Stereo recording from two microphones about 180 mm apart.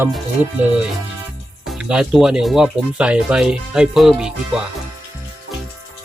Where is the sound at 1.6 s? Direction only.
5° right (ahead or behind).